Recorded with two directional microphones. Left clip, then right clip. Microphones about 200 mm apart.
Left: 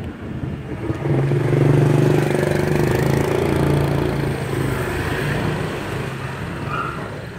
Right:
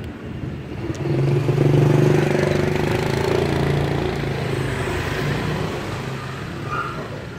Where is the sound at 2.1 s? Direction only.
50° left (ahead or behind); by 5.4 s 35° left (ahead or behind).